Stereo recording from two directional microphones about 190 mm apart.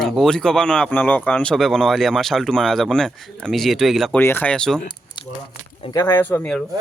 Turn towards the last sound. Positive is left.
turn(degrees=5)  # may be behind; listen again after turning